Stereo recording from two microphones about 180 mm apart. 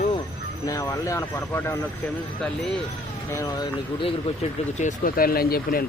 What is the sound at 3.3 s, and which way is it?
Speech, 20° left (ahead or behind).